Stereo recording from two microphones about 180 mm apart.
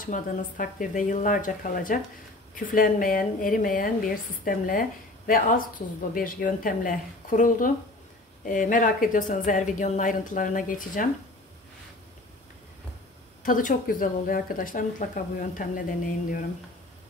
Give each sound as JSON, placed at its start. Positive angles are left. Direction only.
{"t": 0.0, "sound": "speech", "side_deg": 50}
{"t": 13.4, "sound": "speech", "side_deg": 50}